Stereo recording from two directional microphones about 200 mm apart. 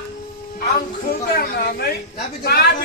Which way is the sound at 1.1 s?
50° left (ahead or behind).